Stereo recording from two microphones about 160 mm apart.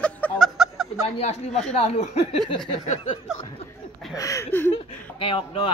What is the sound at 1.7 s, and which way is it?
Speech, 40° left (ahead or behind).